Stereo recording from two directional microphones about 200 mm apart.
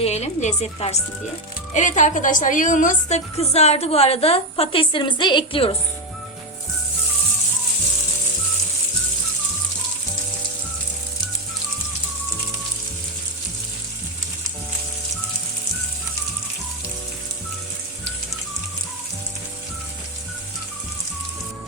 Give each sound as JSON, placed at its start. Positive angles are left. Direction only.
{"t": 0.0, "sound": "a woman's voice", "side_deg": 35}